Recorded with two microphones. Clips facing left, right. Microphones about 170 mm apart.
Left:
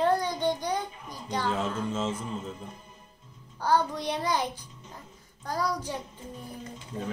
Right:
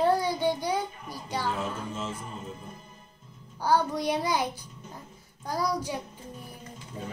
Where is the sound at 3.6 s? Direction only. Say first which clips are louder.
Right 1 dB; 10° right (ahead or behind).